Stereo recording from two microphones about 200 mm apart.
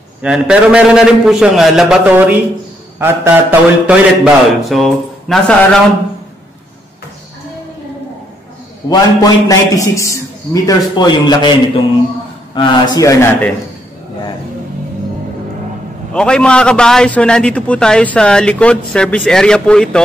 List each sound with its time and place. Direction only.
0.2 s a man's voice: 5° right (ahead or behind)
8.8 s a man's voice: 20° left (ahead or behind)
12.5 s speech: 20° left (ahead or behind)
16.1 s a man's voice: 5° left (ahead or behind)